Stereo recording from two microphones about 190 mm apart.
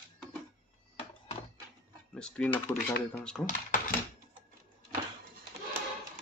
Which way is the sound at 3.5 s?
45° left (ahead or behind).